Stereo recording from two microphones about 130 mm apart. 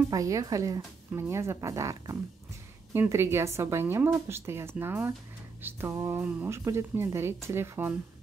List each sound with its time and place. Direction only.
0.1 s speech: 25° right (ahead or behind)